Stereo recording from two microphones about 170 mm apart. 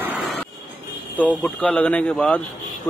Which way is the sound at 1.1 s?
10° left (ahead or behind).